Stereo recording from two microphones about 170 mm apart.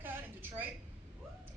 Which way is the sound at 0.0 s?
10° right (ahead or behind).